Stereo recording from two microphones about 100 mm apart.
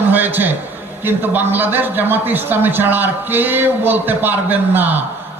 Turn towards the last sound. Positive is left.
turn(degrees=-20)  # may be behind; listen again after turning